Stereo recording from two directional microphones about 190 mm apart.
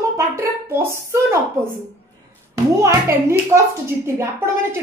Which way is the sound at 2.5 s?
15° right (ahead or behind).